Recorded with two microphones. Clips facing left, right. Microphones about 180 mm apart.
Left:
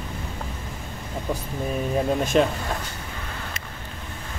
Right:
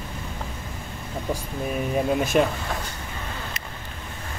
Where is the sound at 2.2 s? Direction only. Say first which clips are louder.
Left 1 dB; 5° right (ahead or behind).